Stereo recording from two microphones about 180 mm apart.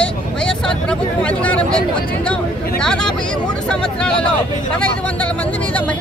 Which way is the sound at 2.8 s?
5° left (ahead or behind).